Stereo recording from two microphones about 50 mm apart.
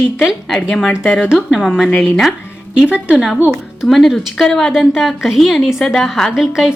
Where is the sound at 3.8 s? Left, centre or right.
Centre.